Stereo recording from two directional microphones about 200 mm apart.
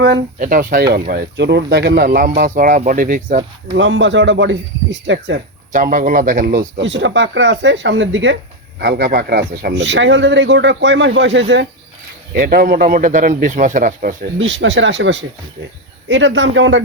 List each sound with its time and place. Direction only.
0.3 s speech: 40° right (ahead or behind)
3.8 s a man's voice: 70° right (ahead or behind)
5.7 s speech: 40° right (ahead or behind)
6.8 s a man's voice: 65° right (ahead or behind)
8.8 s a man's voice: 55° right (ahead or behind)
12.3 s speech: 45° right (ahead or behind)
14.3 s a man's voice: 65° right (ahead or behind)